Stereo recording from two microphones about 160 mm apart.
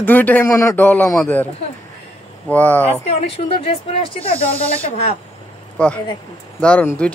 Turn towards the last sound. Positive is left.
turn(degrees=10)  # may be behind; listen again after turning